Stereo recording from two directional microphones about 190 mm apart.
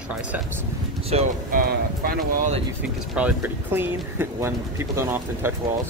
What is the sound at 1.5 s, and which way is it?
Speech, 50° right (ahead or behind).